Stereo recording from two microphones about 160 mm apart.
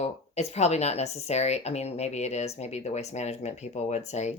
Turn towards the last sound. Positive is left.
turn(degrees=45)  # may be behind; listen again after turning